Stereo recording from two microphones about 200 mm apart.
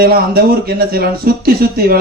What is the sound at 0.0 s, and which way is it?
A man's voice, 50° right (ahead or behind).